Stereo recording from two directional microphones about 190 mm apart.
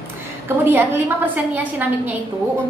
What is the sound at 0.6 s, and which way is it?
A woman's voice, 10° right (ahead or behind).